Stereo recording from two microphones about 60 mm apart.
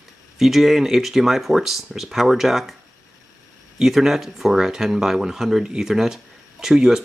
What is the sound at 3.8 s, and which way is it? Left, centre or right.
Speech, centre.